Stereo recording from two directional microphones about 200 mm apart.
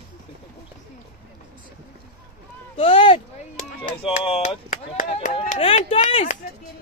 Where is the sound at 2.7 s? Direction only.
25° left (ahead or behind).